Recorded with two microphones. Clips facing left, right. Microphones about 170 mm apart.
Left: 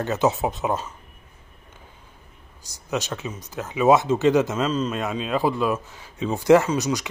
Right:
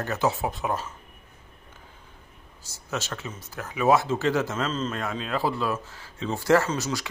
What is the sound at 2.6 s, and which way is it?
Speech, 15° left (ahead or behind).